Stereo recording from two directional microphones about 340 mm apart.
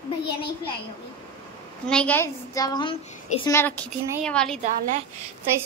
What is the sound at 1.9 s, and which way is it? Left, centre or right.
A woman's voice, centre.